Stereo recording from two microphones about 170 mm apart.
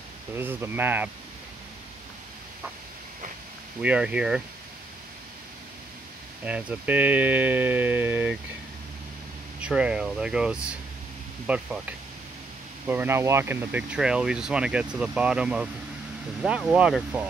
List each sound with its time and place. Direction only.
0.4 s speech: 10° right (ahead or behind)
3.8 s speech: 5° right (ahead or behind)
6.4 s speech: 10° right (ahead or behind)
9.6 s speech: 5° right (ahead or behind)
12.8 s speech: 15° right (ahead or behind)